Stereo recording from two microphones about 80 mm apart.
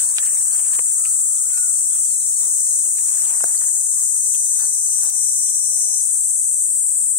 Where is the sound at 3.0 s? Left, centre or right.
Left.